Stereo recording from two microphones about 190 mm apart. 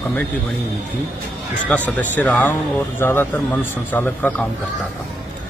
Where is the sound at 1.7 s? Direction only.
5° left (ahead or behind).